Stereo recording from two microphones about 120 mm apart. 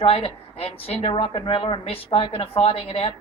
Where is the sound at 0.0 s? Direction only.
55° left (ahead or behind).